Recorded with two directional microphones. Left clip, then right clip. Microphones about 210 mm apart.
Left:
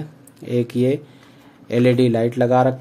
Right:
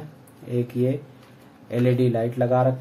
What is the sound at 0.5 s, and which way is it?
Speech, 50° left (ahead or behind).